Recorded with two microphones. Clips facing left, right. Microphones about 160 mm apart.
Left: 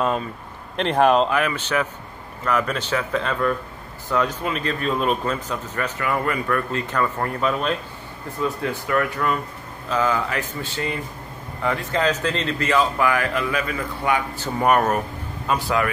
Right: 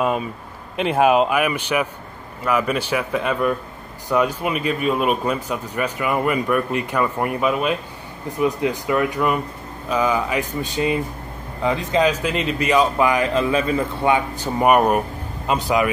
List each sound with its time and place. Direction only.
0.0 s a man's voice: 10° right (ahead or behind); by 14.4 s 25° right (ahead or behind)
14.4 s speech: 15° right (ahead or behind)